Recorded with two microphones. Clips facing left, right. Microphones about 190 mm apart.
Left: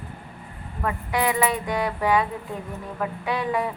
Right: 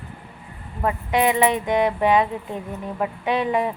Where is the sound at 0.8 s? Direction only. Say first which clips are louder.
Right 4 dB; 20° right (ahead or behind).